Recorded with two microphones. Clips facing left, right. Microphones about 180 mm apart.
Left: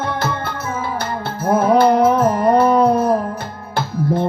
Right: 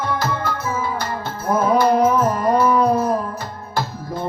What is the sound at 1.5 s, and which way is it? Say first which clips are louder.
Music: left 3 dB; 65° left (ahead or behind).